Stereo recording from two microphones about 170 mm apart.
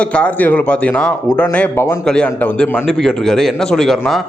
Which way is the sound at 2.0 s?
5° left (ahead or behind).